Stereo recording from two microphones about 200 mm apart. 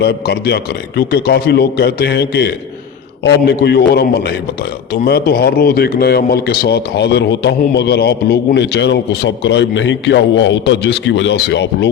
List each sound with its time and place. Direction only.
0.0 s a man's voice: 55° left (ahead or behind)